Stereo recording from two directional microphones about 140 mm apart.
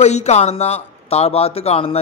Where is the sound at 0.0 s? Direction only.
50° left (ahead or behind).